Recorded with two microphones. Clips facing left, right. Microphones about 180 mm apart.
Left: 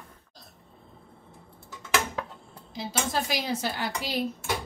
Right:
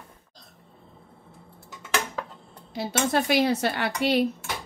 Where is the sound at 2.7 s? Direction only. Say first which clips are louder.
Right 5 dB; 65° right (ahead or behind).